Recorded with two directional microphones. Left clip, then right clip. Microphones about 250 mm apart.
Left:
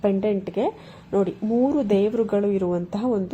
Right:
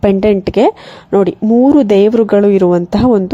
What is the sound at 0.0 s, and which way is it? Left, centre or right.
Speech, right.